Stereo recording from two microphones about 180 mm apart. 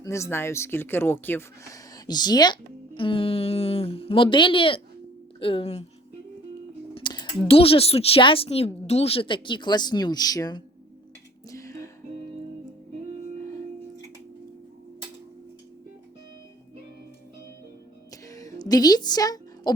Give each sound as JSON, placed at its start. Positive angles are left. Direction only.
{"t": 0.0, "sound": "speech", "side_deg": 15}
{"t": 6.9, "sound": "speech", "side_deg": 25}
{"t": 11.4, "sound": "music", "side_deg": 15}
{"t": 18.1, "sound": "music", "side_deg": 20}